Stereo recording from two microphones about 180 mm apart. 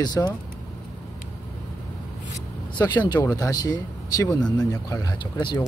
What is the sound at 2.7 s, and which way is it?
Speech, 25° left (ahead or behind).